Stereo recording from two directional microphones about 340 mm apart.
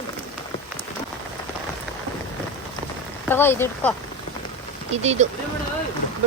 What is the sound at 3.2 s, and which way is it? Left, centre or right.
Speech, centre.